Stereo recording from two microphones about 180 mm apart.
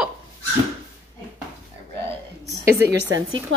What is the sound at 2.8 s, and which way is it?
Speech, 15° right (ahead or behind).